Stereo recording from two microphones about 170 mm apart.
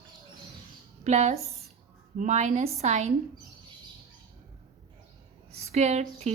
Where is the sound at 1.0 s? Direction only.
40° right (ahead or behind).